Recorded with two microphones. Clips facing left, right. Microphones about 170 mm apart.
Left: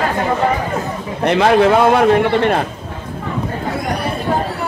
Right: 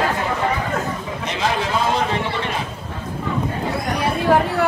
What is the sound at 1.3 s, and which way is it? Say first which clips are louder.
A man's voice: left 12 dB; 60° left (ahead or behind).